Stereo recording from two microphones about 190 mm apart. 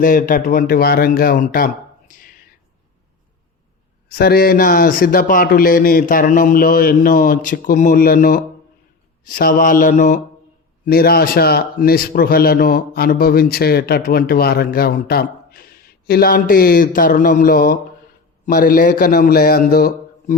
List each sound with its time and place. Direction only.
0.0 s a man's voice: 45° left (ahead or behind)
4.1 s a man's voice: 55° left (ahead or behind)
10.8 s a man's voice: 55° left (ahead or behind)